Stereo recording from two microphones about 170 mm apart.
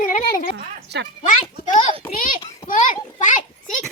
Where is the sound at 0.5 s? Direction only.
80° right.